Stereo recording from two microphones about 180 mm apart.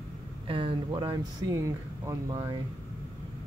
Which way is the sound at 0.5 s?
30° right (ahead or behind).